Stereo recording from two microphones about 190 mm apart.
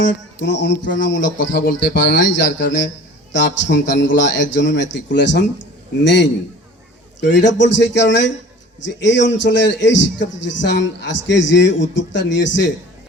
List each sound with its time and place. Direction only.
0.3 s speech: 65° left (ahead or behind)
1.5 s a man's voice: 55° left (ahead or behind); by 12.7 s 70° left (ahead or behind)